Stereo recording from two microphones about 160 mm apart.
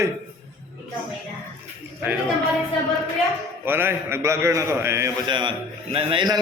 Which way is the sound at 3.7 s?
15° right (ahead or behind).